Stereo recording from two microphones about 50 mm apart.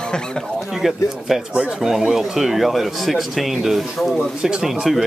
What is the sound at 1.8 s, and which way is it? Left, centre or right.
Speech, centre.